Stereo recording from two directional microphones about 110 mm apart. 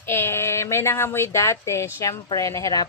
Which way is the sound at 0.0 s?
20° left (ahead or behind).